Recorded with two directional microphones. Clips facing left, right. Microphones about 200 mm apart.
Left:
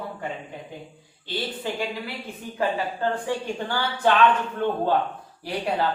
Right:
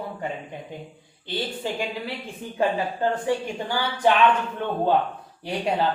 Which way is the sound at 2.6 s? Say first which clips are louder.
Right 2 dB; 20° right (ahead or behind).